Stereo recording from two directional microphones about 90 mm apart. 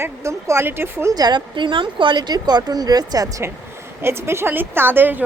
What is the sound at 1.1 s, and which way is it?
Speech, 50° right (ahead or behind).